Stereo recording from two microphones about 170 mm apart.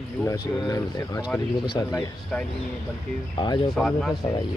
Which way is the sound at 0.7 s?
15° left (ahead or behind).